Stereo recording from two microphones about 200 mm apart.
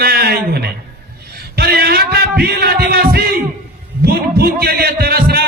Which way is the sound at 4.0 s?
50° right (ahead or behind).